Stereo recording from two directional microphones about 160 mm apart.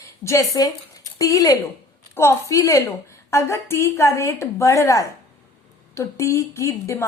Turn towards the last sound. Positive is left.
turn(degrees=20)  # may be behind; listen again after turning